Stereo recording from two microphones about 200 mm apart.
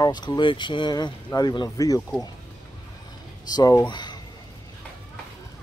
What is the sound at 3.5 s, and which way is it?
Speech, 20° left (ahead or behind).